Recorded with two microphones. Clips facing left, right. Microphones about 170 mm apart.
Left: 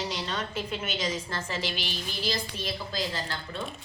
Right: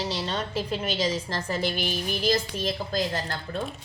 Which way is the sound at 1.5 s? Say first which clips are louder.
Right 8 dB; 50° right (ahead or behind).